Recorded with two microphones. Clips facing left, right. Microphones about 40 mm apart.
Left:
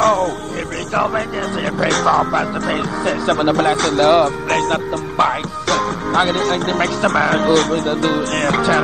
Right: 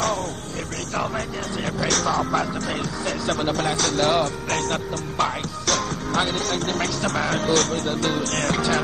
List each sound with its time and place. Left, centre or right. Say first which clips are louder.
0.0 s music: left 10 dB; left
0.9 s speech: left 9 dB; left